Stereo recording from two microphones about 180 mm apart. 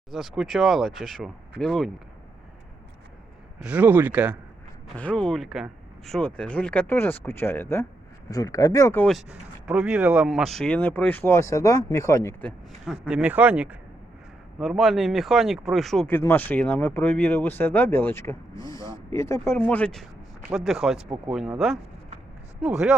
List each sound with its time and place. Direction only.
0.1 s speech: centre (ahead or behind)
3.6 s speech: 10° right (ahead or behind)
4.9 s speech: 5° left (ahead or behind)
9.0 s speech: 5° right (ahead or behind); by 12.5 s 15° left (ahead or behind)
12.8 s speech: 5° right (ahead or behind)